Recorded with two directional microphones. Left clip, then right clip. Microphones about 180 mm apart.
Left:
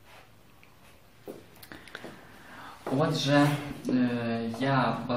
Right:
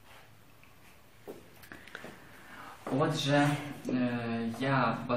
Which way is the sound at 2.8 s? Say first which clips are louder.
Left 3 dB; 15° left (ahead or behind).